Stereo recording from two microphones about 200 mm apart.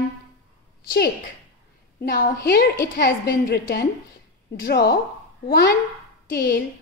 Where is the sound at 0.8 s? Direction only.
55° left (ahead or behind).